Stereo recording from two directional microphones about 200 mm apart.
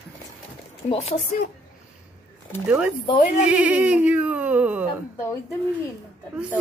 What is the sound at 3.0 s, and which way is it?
Speech, 25° left (ahead or behind).